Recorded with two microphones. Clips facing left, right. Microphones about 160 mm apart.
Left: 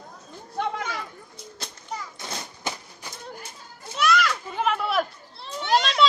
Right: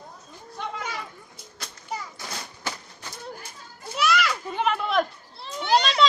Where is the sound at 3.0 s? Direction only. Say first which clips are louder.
Even; 10° left (ahead or behind).